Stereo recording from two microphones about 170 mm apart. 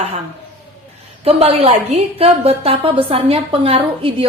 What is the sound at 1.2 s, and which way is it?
A woman's voice, 35° right (ahead or behind).